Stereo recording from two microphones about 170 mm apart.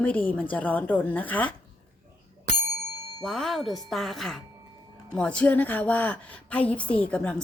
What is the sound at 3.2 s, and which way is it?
Speech, centre (ahead or behind).